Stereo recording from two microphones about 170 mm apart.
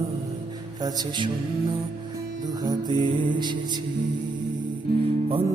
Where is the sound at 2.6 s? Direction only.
25° right (ahead or behind).